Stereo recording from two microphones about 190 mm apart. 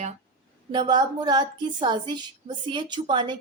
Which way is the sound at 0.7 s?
25° right (ahead or behind).